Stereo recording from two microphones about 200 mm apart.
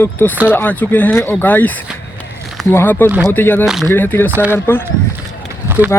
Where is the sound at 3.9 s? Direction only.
10° left (ahead or behind).